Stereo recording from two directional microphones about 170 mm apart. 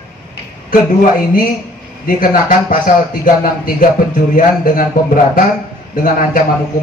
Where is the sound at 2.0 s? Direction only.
55° left (ahead or behind).